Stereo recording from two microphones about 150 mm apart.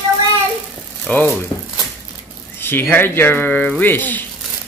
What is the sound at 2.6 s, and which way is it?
Speech, 15° left (ahead or behind).